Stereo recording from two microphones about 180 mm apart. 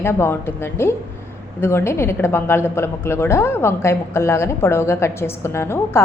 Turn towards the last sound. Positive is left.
turn(degrees=15)  # may be behind; listen again after turning